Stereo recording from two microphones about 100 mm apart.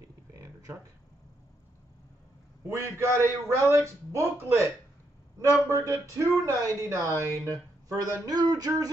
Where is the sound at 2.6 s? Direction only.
30° right (ahead or behind).